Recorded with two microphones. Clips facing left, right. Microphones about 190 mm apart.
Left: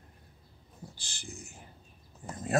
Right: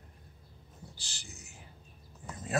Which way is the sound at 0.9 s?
50° left (ahead or behind).